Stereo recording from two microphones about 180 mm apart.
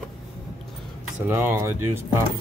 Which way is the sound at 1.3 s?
10° right (ahead or behind).